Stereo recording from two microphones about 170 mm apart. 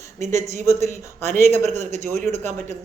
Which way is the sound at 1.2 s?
40° right (ahead or behind).